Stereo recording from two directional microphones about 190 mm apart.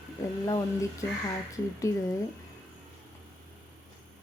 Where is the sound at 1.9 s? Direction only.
15° left (ahead or behind).